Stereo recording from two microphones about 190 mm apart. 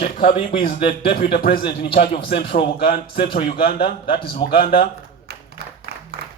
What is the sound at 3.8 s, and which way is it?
Speech, 25° left (ahead or behind).